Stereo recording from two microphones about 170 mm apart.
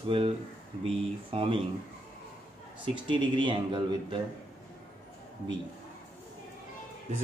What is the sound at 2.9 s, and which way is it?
Speech, 30° right (ahead or behind).